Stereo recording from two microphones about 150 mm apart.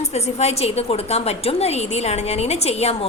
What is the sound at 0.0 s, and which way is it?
A woman's voice, 45° left (ahead or behind).